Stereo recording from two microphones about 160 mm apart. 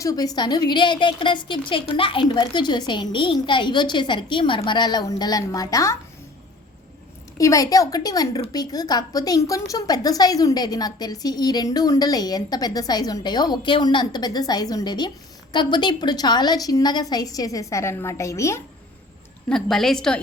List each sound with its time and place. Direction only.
0.0 s a woman's voice: 25° left (ahead or behind)
7.3 s a woman's voice: 20° left (ahead or behind)
19.5 s a woman's voice: 5° left (ahead or behind)